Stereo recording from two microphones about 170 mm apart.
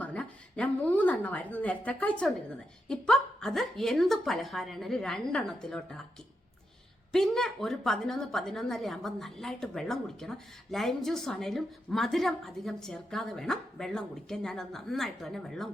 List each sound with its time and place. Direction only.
0.0 s a woman's voice: 5° left (ahead or behind)
7.1 s a woman's voice: centre (ahead or behind)